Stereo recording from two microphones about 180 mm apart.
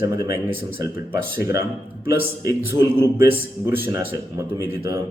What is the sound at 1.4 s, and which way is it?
Speech, 15° right (ahead or behind).